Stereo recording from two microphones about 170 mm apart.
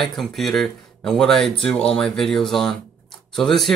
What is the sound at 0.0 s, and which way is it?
Speech, centre (ahead or behind).